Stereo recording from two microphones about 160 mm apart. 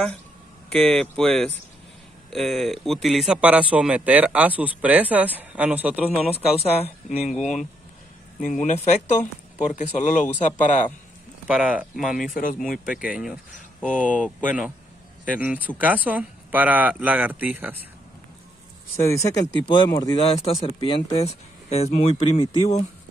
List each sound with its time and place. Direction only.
0.7 s a man's voice: 5° left (ahead or behind)
6.3 s speech: 40° left (ahead or behind)
8.5 s speech: 50° left (ahead or behind)
11.4 s speech: 5° right (ahead or behind)
12.7 s speech: 60° left (ahead or behind)
13.0 s speech: 5° right (ahead or behind)
13.8 s speech: 10° left (ahead or behind)
15.2 s a man's voice: 10° right (ahead or behind)
18.9 s speech: 20° left (ahead or behind)
20.6 s speech: 35° left (ahead or behind)